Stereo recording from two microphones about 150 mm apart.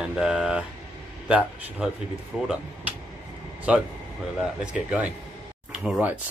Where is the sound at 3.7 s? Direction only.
5° right (ahead or behind).